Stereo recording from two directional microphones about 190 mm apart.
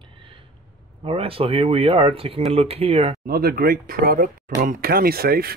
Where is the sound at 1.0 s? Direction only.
30° right (ahead or behind).